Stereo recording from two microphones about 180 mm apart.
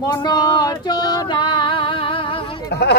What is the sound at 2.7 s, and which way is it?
Speech, 70° left (ahead or behind).